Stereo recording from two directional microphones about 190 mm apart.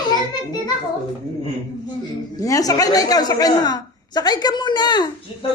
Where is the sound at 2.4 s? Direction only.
15° left (ahead or behind).